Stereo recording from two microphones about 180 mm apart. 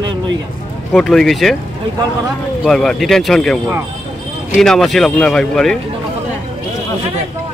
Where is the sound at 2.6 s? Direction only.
Centre (ahead or behind).